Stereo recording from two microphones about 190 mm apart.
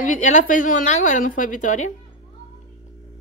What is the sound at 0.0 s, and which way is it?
A woman's voice, 40° left (ahead or behind).